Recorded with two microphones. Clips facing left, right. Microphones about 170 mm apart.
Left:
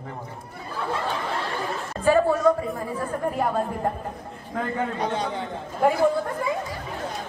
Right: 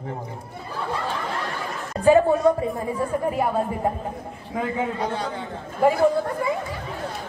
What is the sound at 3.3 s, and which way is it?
A woman's voice, 5° right (ahead or behind).